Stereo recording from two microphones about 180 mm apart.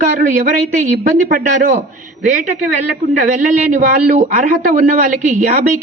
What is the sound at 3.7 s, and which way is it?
A woman's voice, 45° right (ahead or behind).